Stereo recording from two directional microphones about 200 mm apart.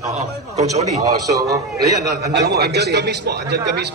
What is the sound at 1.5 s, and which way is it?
A man's voice, 55° right (ahead or behind).